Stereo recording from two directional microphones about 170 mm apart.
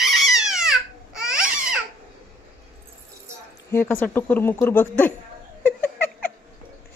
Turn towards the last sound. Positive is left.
turn(degrees=10)  # may be behind; listen again after turning